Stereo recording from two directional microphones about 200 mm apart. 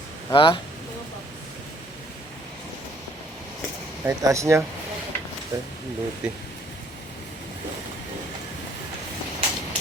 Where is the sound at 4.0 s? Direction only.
15° right (ahead or behind).